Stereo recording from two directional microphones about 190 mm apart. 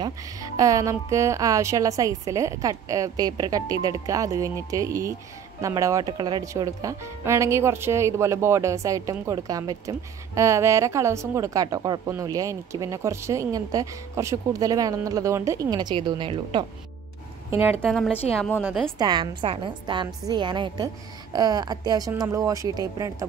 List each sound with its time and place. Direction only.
0.0 s speech: 15° right (ahead or behind)
17.5 s speech: 10° right (ahead or behind)
17.8 s a woman's voice: centre (ahead or behind)
18.9 s a woman's voice: 25° right (ahead or behind)